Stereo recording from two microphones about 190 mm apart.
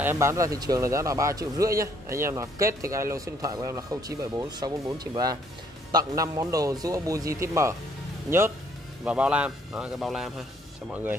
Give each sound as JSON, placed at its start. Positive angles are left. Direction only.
{"t": 0.0, "sound": "a man's voice", "side_deg": -15}